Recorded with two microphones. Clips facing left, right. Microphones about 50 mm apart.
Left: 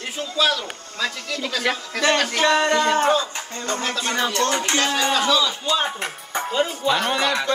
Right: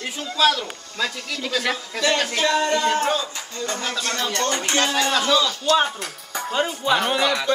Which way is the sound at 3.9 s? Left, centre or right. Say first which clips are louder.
Left 2 dB; centre.